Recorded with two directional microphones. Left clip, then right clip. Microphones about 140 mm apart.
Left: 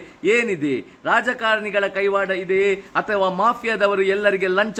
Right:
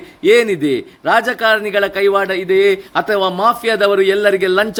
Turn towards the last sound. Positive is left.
turn(degrees=-25)  # may be behind; listen again after turning